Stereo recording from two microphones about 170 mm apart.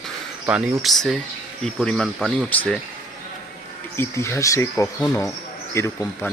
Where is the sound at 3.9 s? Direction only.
15° left (ahead or behind).